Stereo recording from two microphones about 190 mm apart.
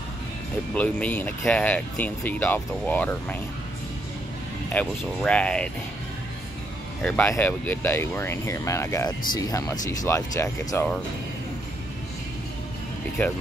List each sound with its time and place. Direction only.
0.7 s speech: 5° left (ahead or behind)
4.7 s speech: 5° left (ahead or behind)
7.0 s speech: 10° left (ahead or behind)